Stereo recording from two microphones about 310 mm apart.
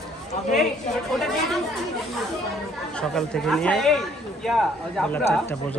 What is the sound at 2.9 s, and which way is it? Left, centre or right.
Speech, centre.